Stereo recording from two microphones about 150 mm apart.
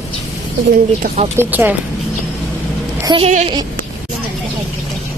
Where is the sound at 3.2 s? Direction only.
45° right (ahead or behind).